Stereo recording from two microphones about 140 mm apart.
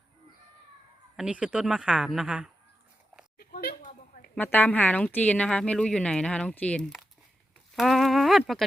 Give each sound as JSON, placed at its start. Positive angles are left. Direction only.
{"t": 1.1, "sound": "speech", "side_deg": -5}
{"t": 3.4, "sound": "a sound", "side_deg": 90}
{"t": 4.4, "sound": "a woman's voice", "side_deg": 15}